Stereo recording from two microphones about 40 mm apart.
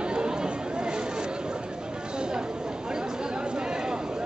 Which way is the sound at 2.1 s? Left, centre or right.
Right.